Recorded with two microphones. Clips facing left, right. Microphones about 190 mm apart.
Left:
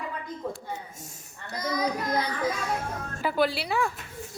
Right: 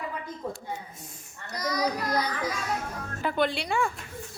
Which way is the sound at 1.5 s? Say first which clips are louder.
Even; 25° left (ahead or behind).